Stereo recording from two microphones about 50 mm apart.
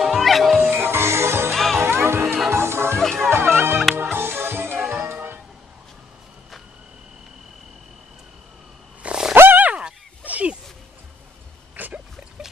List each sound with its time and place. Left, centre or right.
0.0 s music: centre
0.6 s music: right
1.5 s music: centre
1.8 s music: right
2.2 s music: centre
2.5 s music: right
3.0 s music: centre
3.3 s music: right
9.0 s wild animals: centre
9.3 s grunt: right
9.6 s fowl: right
10.2 s a sound: right
11.7 s a sound: right